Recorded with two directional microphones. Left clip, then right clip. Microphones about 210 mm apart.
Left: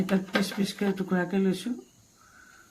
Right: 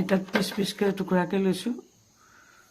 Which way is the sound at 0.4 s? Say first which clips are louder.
Right 3 dB; 45° right (ahead or behind).